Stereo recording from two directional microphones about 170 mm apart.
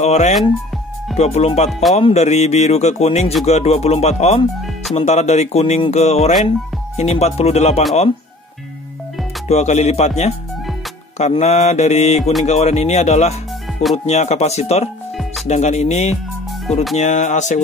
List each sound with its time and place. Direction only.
0.0 s speech: 40° left (ahead or behind)
1.7 s music: centre (ahead or behind)
2.0 s speech: 40° left (ahead or behind)
9.5 s speech: 40° left (ahead or behind)
12.2 s music: centre (ahead or behind)
12.4 s speech: 40° left (ahead or behind)